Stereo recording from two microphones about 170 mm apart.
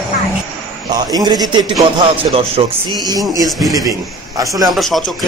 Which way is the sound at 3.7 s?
20° right (ahead or behind).